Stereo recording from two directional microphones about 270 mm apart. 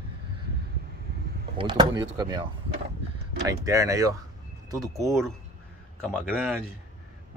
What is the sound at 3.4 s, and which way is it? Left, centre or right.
Speech, centre.